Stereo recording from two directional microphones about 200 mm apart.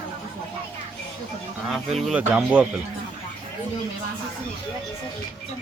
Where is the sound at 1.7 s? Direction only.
Centre (ahead or behind).